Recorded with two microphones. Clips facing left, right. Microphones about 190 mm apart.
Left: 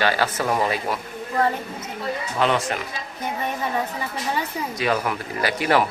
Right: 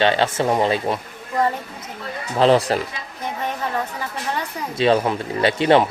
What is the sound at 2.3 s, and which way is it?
Speech, 30° right (ahead or behind).